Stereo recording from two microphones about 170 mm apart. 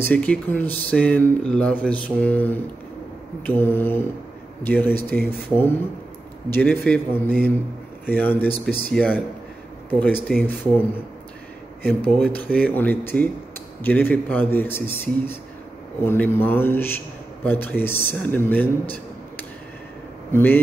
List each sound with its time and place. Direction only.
0.0 s speech: 10° left (ahead or behind)
12.2 s speech: 10° left (ahead or behind)
20.3 s speech: 10° left (ahead or behind)